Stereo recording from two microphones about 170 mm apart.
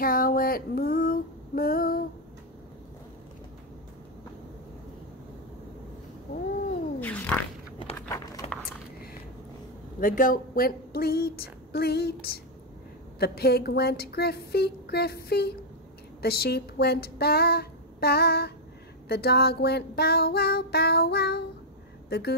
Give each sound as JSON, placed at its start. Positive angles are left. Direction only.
{"t": 0.0, "sound": "female singing", "side_deg": 60}
{"t": 7.0, "sound": "fart", "side_deg": 10}
{"t": 8.4, "sound": "a sound", "side_deg": 35}
{"t": 9.9, "sound": "a woman's voice", "side_deg": 55}
{"t": 13.2, "sound": "child singing", "side_deg": 65}